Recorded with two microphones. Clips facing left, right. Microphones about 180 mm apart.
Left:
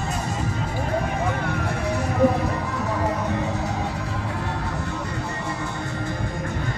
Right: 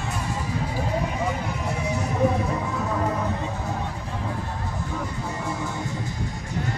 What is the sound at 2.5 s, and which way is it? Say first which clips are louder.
Music: even; centre (ahead or behind).